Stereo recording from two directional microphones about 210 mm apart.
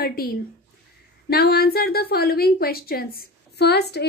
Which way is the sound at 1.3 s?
50° left (ahead or behind).